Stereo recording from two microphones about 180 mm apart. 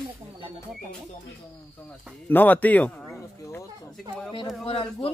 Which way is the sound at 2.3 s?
10° left (ahead or behind).